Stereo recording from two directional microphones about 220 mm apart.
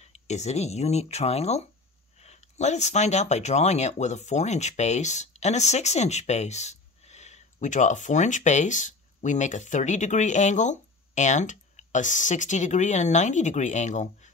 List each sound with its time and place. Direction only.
0.0 s speech: 30° left (ahead or behind)